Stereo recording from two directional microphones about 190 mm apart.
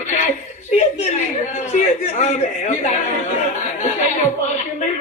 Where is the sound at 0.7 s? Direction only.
35° left (ahead or behind).